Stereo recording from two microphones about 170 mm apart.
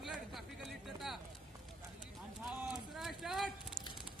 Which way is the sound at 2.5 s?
Centre (ahead or behind).